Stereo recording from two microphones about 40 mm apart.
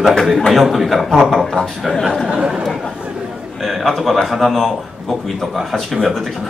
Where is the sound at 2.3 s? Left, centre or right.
Right.